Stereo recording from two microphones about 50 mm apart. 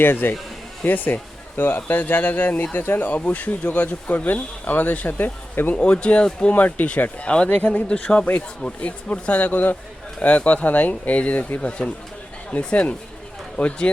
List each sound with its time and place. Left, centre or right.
0.0 s a man's voice: left
3.2 s speech: left
5.7 s speech: left